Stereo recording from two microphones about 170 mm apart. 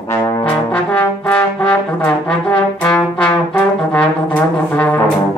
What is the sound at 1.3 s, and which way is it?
Brass instrument, 10° left (ahead or behind).